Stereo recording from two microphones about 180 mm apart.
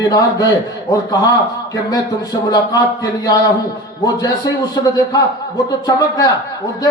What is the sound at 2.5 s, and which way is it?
Speech, 20° left (ahead or behind).